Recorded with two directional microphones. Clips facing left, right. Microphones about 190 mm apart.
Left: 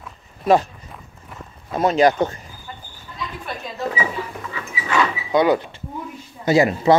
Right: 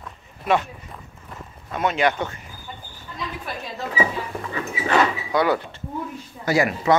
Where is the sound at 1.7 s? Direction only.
35° left (ahead or behind).